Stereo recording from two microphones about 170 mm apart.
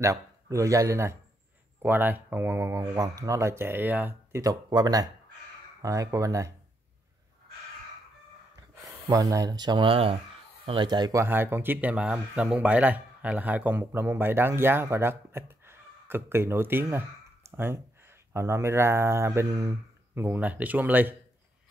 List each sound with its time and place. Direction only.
0.0 s speech: 20° right (ahead or behind)
9.0 s speech: 20° right (ahead or behind)